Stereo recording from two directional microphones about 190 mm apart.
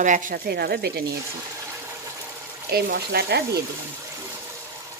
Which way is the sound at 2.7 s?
55° right (ahead or behind).